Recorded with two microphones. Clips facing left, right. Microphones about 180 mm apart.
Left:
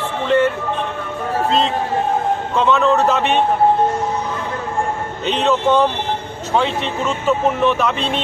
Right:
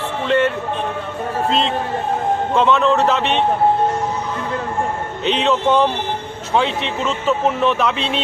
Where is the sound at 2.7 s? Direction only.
5° left (ahead or behind).